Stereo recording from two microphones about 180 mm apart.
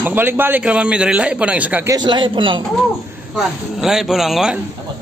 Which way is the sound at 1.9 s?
25° right (ahead or behind).